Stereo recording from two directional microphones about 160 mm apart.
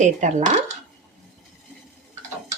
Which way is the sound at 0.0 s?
50° right (ahead or behind).